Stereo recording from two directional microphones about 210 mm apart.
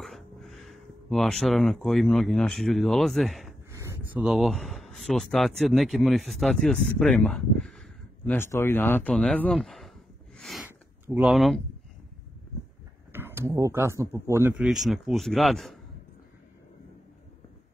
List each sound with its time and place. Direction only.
0.0 s speech: centre (ahead or behind)
13.1 s speech: 10° right (ahead or behind)